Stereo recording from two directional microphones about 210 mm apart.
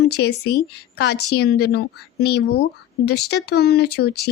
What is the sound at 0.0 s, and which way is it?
Speech, 50° left (ahead or behind).